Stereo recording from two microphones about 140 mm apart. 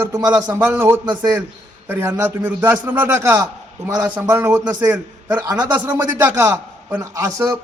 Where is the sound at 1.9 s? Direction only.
15° right (ahead or behind).